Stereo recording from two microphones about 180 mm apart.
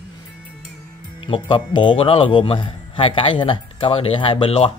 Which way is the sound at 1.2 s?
25° left (ahead or behind).